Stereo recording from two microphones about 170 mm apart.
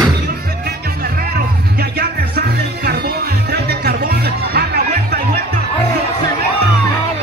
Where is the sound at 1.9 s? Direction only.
65° right (ahead or behind).